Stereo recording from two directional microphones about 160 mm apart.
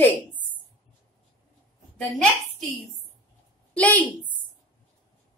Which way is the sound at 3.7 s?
10° left (ahead or behind).